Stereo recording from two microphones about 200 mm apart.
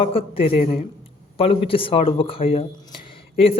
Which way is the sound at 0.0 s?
25° left (ahead or behind).